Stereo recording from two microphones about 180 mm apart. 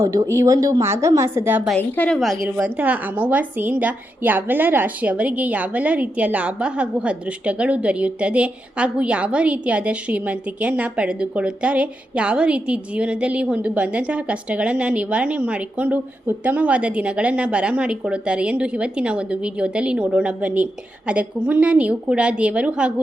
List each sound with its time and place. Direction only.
0.0 s a woman's voice: 20° right (ahead or behind)
1.7 s a woman's voice: 5° left (ahead or behind)